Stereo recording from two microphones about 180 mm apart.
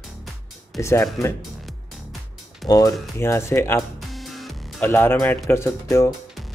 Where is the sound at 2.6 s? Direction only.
20° left (ahead or behind).